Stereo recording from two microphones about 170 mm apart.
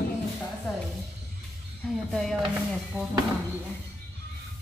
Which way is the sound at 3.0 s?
10° right (ahead or behind).